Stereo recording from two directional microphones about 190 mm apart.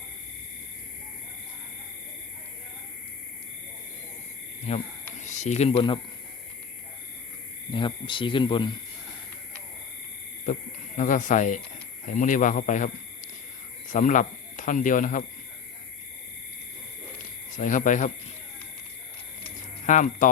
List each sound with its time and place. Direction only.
4.7 s speech: 35° left (ahead or behind)
7.7 s speech: 25° left (ahead or behind)
10.4 s speech: 40° left (ahead or behind)
13.9 s speech: 40° left (ahead or behind)
17.6 s speech: 40° left (ahead or behind)
19.8 s speech: 40° left (ahead or behind)